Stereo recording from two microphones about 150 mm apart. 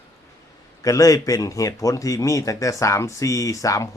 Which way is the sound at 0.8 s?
25° left (ahead or behind).